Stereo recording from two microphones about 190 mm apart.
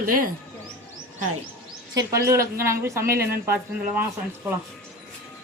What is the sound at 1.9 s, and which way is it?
Speech, 15° right (ahead or behind).